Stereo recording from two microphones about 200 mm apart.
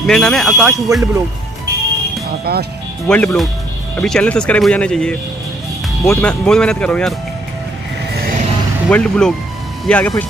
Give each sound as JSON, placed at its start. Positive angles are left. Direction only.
{"t": 0.0, "sound": "speech", "side_deg": 0}
{"t": 2.5, "sound": "speech", "side_deg": -50}
{"t": 3.1, "sound": "speech", "side_deg": 5}
{"t": 8.8, "sound": "speech", "side_deg": 5}